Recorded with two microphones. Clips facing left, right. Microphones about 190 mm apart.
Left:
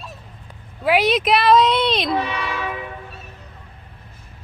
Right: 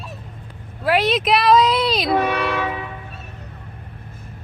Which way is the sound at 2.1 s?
55° right (ahead or behind).